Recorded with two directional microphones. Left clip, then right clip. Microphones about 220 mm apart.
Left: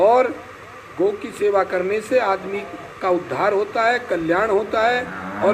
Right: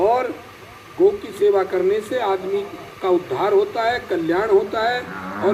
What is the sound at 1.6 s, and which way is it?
Speech, 45° left (ahead or behind).